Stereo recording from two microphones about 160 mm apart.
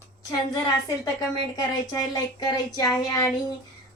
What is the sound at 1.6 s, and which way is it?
A woman's voice, 25° left (ahead or behind).